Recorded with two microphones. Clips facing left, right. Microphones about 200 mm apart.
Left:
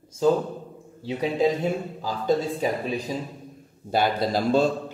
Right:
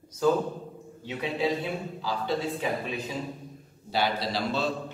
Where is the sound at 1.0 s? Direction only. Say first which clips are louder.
Left 6 dB; 35° left (ahead or behind).